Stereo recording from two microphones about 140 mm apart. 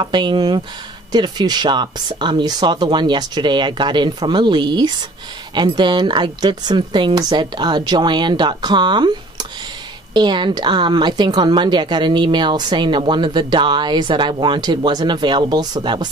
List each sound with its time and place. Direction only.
0.0 s a woman's voice: 35° right (ahead or behind)